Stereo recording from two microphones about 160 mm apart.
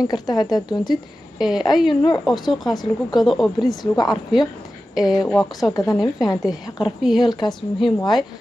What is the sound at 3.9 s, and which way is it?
Speech, 25° left (ahead or behind).